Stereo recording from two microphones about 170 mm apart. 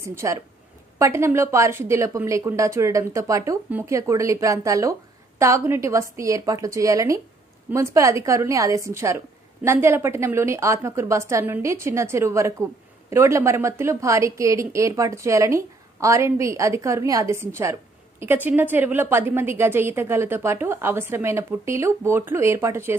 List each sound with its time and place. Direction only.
0.0 s a woman's voice: 15° right (ahead or behind)